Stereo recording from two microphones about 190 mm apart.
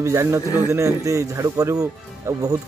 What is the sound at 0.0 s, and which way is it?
A man's voice, 15° right (ahead or behind).